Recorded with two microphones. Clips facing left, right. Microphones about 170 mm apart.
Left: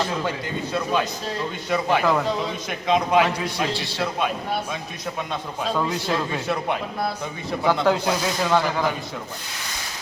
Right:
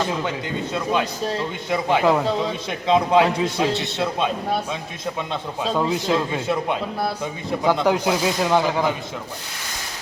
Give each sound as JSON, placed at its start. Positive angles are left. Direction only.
{"t": 1.7, "sound": "a man's voice", "side_deg": -20}
{"t": 5.3, "sound": "a man's voice", "side_deg": -20}